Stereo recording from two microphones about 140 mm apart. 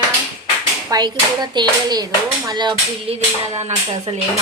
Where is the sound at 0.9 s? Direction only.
30° right (ahead or behind).